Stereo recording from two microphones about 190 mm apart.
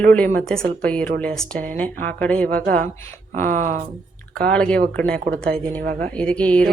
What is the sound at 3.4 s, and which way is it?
Speech, 45° right (ahead or behind).